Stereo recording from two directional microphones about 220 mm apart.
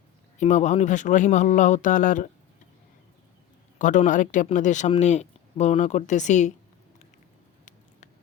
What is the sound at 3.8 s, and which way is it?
Speech, 35° left (ahead or behind).